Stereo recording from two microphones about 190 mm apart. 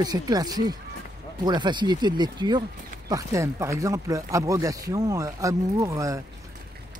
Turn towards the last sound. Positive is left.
turn(degrees=-15)  # may be behind; listen again after turning